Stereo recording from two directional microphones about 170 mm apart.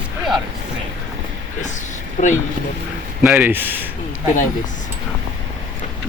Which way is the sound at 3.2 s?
10° right (ahead or behind).